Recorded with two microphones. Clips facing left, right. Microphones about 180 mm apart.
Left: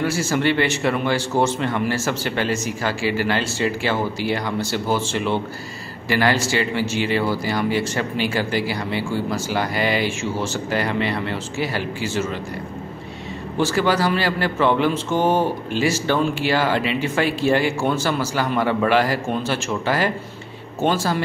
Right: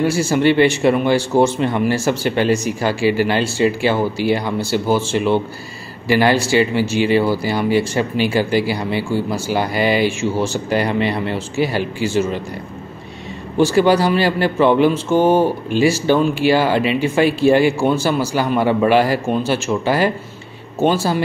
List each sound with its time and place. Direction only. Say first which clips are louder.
0.0 s speech: right 5 dB; 15° right (ahead or behind)
13.6 s speech: right 6 dB; 15° right (ahead or behind)